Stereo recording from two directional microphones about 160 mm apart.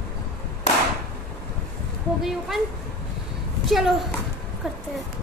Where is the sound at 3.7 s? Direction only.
Centre (ahead or behind).